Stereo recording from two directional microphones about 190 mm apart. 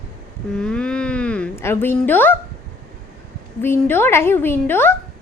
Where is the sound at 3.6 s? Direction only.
10° left (ahead or behind).